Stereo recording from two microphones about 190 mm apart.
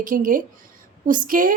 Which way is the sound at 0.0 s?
45° right (ahead or behind).